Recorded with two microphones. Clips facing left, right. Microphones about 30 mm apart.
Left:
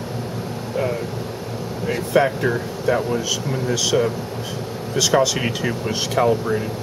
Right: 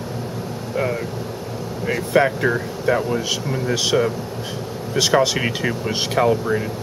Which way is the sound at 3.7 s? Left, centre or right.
Right.